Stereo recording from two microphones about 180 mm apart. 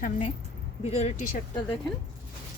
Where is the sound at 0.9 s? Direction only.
35° left (ahead or behind).